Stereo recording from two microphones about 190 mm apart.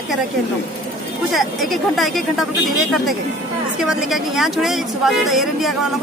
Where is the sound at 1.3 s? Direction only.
Centre (ahead or behind).